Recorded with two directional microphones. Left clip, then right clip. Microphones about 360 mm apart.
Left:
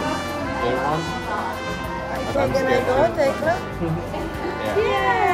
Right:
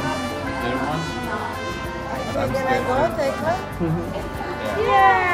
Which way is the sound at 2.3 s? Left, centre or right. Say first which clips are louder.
Left 2 dB; centre.